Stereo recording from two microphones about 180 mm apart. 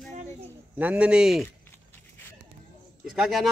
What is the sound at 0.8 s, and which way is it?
Speech, 10° right (ahead or behind).